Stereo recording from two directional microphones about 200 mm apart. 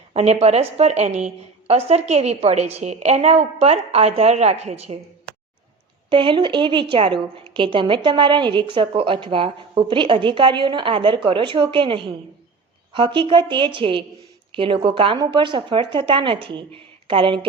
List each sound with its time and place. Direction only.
0.1 s a woman's voice: 30° right (ahead or behind)
6.1 s a woman's voice: 25° right (ahead or behind)